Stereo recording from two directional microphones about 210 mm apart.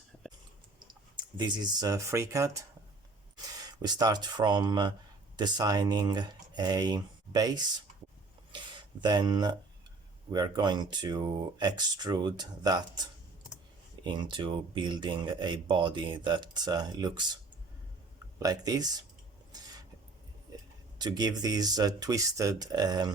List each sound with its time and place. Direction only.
1.1 s speech: 20° right (ahead or behind)
14.0 s speech: 20° right (ahead or behind)
18.3 s speech: 15° right (ahead or behind)
21.0 s speech: 20° right (ahead or behind)